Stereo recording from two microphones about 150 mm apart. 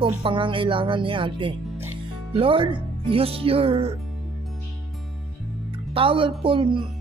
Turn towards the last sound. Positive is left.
turn(degrees=-35)  # may be behind; listen again after turning